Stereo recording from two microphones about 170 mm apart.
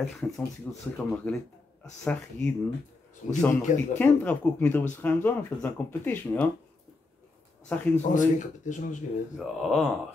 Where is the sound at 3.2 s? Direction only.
45° left (ahead or behind).